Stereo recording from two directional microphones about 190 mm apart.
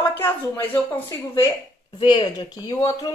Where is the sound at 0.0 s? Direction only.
10° left (ahead or behind).